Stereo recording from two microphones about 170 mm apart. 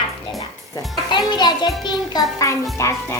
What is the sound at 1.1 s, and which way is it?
Music, 25° left (ahead or behind).